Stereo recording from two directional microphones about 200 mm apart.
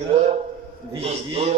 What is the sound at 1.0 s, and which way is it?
Speech, 30° right (ahead or behind).